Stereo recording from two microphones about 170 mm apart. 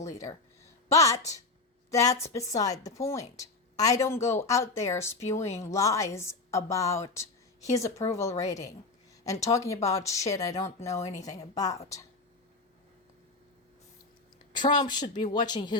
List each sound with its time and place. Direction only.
0.0 s a sound: 20° left (ahead or behind)
0.9 s a woman's voice: 20° left (ahead or behind)
14.5 s a woman's voice: 25° left (ahead or behind)